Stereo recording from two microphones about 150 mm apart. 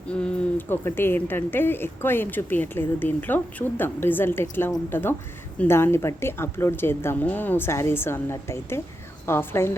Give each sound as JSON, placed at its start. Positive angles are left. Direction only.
{"t": 0.1, "sound": "speech", "side_deg": 5}